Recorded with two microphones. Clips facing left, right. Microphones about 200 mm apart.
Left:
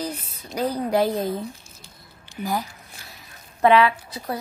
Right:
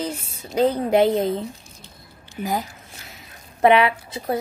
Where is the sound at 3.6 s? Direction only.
20° right (ahead or behind).